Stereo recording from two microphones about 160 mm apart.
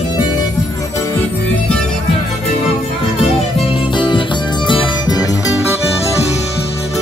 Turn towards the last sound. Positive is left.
turn(degrees=25)  # may be behind; listen again after turning